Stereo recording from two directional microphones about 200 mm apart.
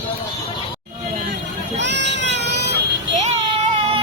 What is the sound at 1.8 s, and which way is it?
Baby cry, 60° right (ahead or behind).